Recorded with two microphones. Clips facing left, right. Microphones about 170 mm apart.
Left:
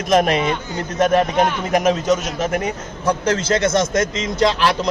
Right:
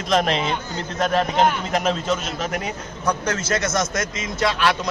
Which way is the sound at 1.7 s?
15° left (ahead or behind).